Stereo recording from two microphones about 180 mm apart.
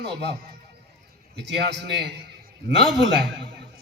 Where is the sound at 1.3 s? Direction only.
70° right (ahead or behind).